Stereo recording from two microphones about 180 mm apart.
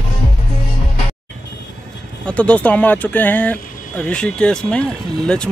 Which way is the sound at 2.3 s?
5° left (ahead or behind).